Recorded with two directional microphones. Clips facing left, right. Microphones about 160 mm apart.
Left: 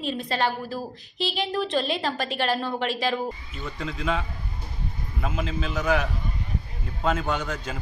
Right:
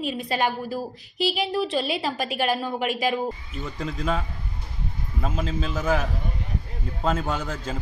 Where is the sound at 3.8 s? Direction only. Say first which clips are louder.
Right 1 dB; 40° right (ahead or behind).